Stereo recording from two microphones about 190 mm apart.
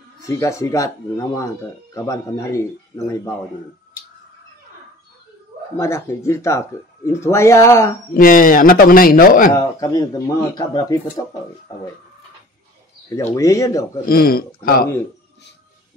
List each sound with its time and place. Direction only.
0.3 s speech: 15° left (ahead or behind)
5.8 s speech: 15° left (ahead or behind)
8.2 s a man's voice: 45° left (ahead or behind)
9.5 s speech: 20° left (ahead or behind)
13.4 s speech: 15° left (ahead or behind)
14.0 s a man's voice: 50° left (ahead or behind)